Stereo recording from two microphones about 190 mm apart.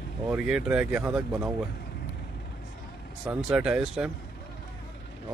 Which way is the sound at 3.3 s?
5° right (ahead or behind).